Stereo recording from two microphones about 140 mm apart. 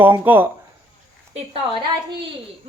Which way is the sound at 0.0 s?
15° right (ahead or behind).